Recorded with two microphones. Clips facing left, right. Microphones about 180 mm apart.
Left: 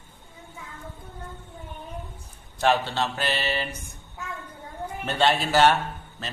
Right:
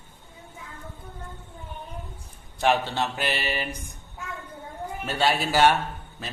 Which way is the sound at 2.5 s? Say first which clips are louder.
Even; 15° right (ahead or behind).